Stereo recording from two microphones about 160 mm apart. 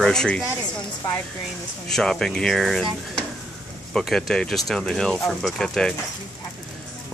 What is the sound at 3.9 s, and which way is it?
Speech, 5° left (ahead or behind).